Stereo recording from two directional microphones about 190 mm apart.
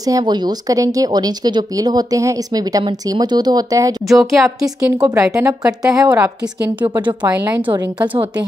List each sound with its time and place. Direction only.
0.0 s speech: 20° right (ahead or behind)
4.1 s speech: centre (ahead or behind)
5.0 s speech: 15° right (ahead or behind)